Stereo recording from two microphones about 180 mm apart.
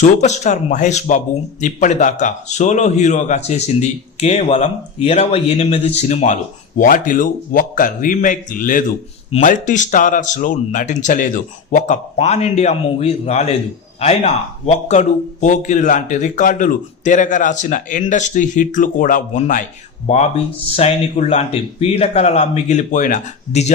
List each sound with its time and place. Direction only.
0.0 s a man's voice: 40° left (ahead or behind)